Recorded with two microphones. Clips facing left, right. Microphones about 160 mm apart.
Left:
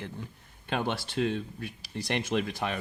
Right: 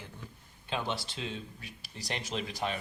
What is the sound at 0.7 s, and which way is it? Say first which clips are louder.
Speech: left 4 dB; 55° left (ahead or behind).